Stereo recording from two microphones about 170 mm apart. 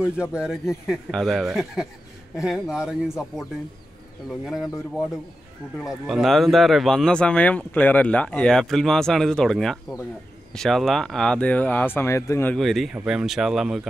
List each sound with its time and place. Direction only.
0.0 s speech: 5° right (ahead or behind)
5.8 s speech: centre (ahead or behind); by 12.5 s 15° left (ahead or behind)
12.5 s speech: centre (ahead or behind)